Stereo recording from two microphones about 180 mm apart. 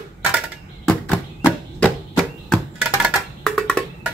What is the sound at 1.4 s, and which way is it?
Chopping, 10° left (ahead or behind).